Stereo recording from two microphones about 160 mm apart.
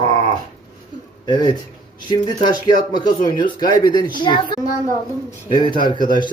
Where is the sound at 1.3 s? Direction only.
25° left (ahead or behind).